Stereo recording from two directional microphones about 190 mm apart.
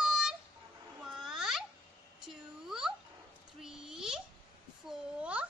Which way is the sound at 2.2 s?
5° right (ahead or behind).